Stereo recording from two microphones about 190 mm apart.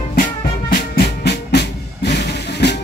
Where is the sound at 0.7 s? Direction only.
60° left (ahead or behind).